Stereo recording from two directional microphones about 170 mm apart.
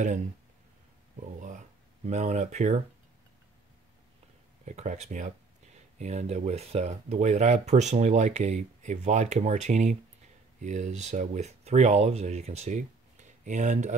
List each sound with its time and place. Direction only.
2.0 s speech: 40° right (ahead or behind)
4.6 s speech: 45° right (ahead or behind)